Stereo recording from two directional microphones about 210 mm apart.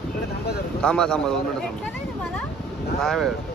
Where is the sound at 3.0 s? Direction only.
Centre (ahead or behind).